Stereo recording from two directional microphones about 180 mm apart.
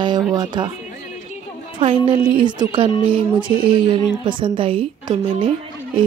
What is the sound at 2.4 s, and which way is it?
A woman's voice, 25° right (ahead or behind).